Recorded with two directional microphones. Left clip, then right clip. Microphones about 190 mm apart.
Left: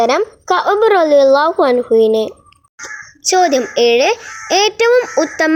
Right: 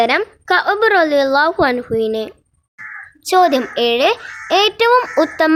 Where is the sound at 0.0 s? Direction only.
10° left (ahead or behind).